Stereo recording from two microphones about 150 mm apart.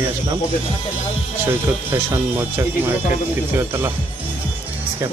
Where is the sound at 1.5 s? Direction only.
15° right (ahead or behind).